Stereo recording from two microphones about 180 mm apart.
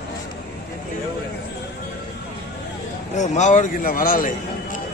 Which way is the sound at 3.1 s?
40° left (ahead or behind).